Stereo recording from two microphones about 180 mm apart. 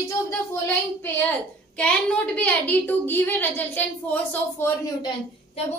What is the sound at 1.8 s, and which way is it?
A woman's voice, 5° left (ahead or behind).